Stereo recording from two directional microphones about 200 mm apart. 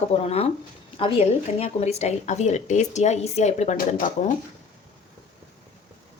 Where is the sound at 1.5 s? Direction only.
30° left (ahead or behind).